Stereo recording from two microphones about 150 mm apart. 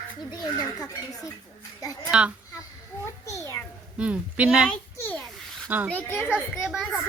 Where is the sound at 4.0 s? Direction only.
10° right (ahead or behind).